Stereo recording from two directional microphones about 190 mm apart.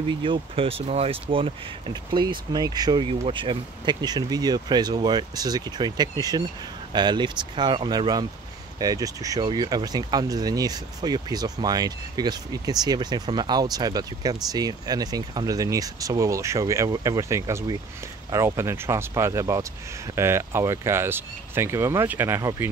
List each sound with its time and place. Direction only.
0.1 s speech: 25° right (ahead or behind)